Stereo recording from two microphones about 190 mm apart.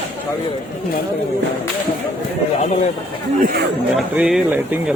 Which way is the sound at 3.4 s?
55° right (ahead or behind).